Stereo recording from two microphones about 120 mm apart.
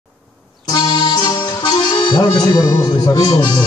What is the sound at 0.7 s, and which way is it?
Accordion, 40° left (ahead or behind).